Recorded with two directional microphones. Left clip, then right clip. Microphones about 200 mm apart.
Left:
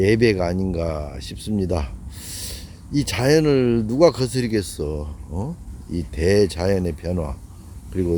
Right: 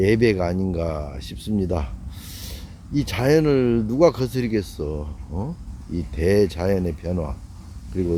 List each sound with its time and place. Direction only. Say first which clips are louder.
0.0 s speech: left 1 dB; 10° left (ahead or behind)